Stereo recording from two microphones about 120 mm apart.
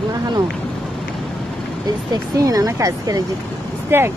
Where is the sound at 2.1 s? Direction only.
30° right (ahead or behind).